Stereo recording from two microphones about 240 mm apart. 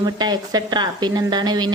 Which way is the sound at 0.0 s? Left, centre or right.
Centre.